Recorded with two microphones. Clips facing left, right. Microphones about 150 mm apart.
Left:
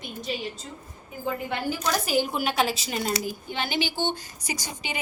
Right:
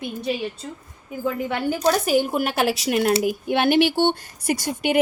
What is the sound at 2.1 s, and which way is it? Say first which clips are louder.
A woman's voice: right 5 dB; 50° right (ahead or behind).